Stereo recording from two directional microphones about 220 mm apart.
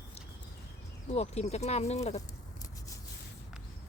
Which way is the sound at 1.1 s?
30° left (ahead or behind).